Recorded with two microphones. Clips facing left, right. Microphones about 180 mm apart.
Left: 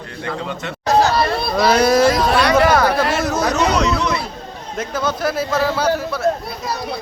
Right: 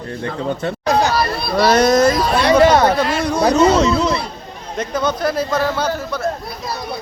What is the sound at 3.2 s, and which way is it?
Speech, centre (ahead or behind).